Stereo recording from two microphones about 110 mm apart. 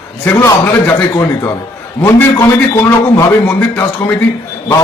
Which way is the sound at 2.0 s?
25° left (ahead or behind).